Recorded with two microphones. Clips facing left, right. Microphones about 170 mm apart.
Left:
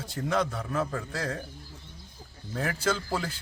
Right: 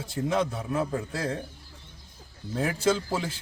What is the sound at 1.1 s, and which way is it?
Speech, 25° right (ahead or behind).